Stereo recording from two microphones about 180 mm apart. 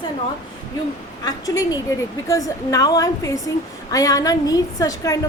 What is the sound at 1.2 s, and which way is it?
A woman's voice, 20° left (ahead or behind).